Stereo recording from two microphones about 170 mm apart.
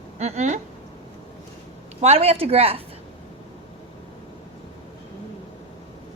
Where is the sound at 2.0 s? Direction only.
40° right (ahead or behind).